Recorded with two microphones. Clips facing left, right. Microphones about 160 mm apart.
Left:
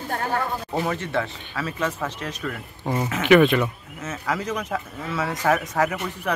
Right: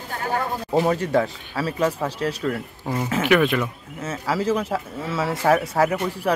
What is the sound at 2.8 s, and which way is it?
Speech, 20° left (ahead or behind).